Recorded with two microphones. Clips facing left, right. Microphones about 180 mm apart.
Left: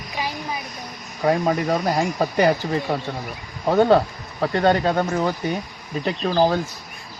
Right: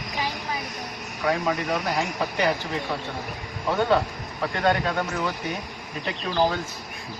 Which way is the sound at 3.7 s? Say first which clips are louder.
Left 6 dB; 40° left (ahead or behind).